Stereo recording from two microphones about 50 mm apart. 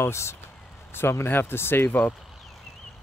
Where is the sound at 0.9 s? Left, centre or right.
Left.